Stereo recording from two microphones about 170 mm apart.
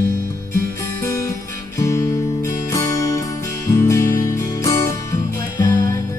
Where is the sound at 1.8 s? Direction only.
20° left (ahead or behind).